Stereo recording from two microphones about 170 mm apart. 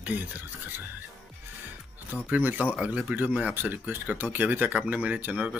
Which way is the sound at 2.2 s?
10° right (ahead or behind).